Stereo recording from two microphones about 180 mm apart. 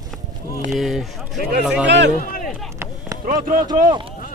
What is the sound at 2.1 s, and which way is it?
Speech, 50° left (ahead or behind).